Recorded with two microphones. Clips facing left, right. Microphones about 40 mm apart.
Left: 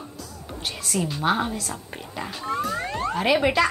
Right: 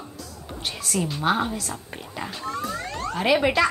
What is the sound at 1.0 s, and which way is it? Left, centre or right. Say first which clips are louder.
A woman's voice: even; centre.